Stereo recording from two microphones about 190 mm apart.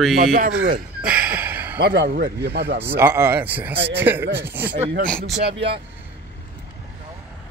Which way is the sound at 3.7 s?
65° right (ahead or behind).